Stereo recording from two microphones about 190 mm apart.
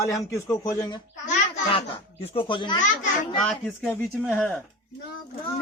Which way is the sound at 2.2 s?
25° left (ahead or behind).